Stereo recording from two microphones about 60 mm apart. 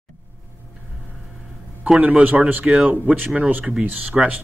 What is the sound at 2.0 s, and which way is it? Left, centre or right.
Speech, right.